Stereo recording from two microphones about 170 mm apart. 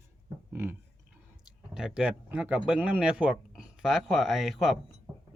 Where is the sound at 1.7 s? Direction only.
5° right (ahead or behind).